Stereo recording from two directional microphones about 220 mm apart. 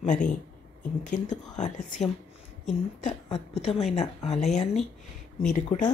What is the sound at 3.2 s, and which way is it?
A woman's voice, 25° left (ahead or behind).